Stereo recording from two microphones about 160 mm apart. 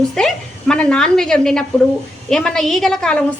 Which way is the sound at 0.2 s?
5° left (ahead or behind).